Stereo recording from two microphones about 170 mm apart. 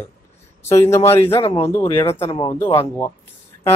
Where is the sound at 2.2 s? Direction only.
30° left (ahead or behind).